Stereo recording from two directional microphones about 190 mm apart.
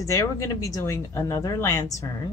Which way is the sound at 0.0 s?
15° left (ahead or behind).